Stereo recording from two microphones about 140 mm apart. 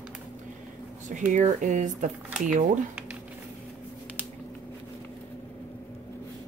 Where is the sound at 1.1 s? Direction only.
65° right (ahead or behind).